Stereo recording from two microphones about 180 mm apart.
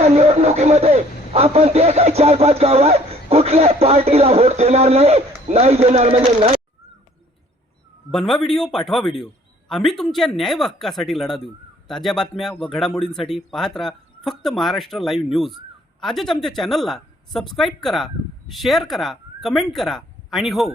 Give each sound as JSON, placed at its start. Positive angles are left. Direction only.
{"t": 0.1, "sound": "a man's voice", "side_deg": -35}
{"t": 8.3, "sound": "speech", "side_deg": 0}